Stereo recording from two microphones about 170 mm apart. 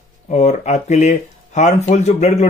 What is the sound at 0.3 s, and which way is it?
Speech, 40° left (ahead or behind).